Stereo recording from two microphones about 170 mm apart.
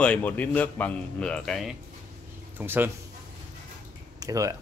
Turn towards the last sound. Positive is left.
turn(degrees=-20)  # may be behind; listen again after turning